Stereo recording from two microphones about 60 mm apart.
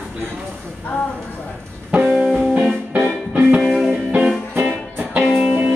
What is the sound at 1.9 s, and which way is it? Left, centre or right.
Music, centre.